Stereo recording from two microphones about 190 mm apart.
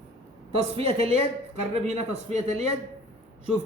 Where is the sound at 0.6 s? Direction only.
30° right (ahead or behind).